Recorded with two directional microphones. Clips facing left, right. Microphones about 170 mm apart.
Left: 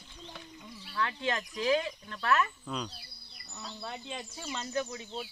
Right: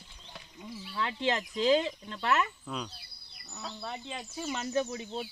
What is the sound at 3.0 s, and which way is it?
Bird, centre (ahead or behind).